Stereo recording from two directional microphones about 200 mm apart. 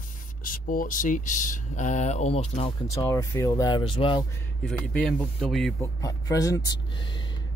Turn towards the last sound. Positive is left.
turn(degrees=15)  # may be behind; listen again after turning